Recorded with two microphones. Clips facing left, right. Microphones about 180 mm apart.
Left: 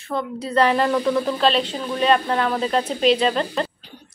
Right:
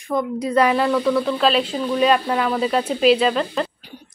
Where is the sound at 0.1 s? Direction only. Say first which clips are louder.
Right 3 dB; 10° right (ahead or behind).